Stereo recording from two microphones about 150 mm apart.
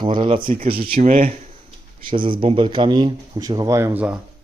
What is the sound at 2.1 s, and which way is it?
Speech, 35° right (ahead or behind).